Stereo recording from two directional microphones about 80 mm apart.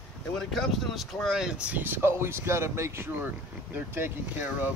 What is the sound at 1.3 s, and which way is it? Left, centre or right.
Speech, centre.